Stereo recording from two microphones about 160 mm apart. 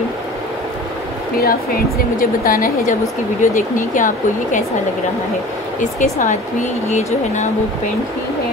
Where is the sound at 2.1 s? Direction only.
60° left (ahead or behind).